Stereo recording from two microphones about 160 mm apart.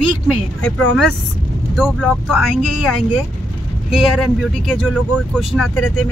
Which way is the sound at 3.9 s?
Centre (ahead or behind).